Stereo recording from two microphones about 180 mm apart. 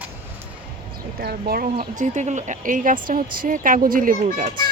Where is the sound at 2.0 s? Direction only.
40° right (ahead or behind).